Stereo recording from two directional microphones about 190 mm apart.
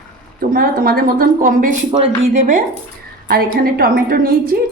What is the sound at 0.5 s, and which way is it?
A woman's voice, 50° right (ahead or behind).